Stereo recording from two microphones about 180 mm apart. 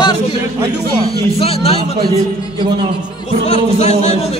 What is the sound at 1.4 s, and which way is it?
Speech, 35° left (ahead or behind).